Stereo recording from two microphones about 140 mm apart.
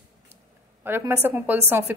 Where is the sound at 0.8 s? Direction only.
20° right (ahead or behind).